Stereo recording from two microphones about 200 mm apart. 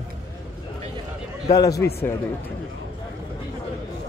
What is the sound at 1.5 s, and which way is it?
Speech, 20° left (ahead or behind).